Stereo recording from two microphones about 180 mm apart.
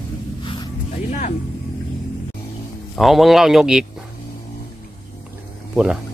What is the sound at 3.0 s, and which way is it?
Speech, centre (ahead or behind).